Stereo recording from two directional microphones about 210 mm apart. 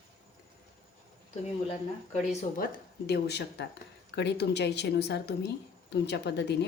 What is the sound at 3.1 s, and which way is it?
A woman's voice, 50° left (ahead or behind).